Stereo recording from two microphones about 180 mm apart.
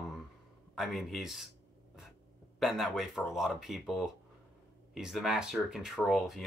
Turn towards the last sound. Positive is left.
turn(degrees=0)  # may be behind; listen again after turning